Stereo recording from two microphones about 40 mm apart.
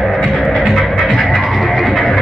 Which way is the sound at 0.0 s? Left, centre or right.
Centre.